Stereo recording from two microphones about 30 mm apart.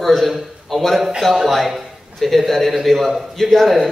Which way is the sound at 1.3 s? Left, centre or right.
Centre.